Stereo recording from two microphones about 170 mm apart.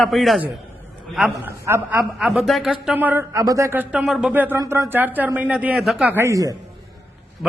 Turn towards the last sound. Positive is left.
turn(degrees=-20)  # may be behind; listen again after turning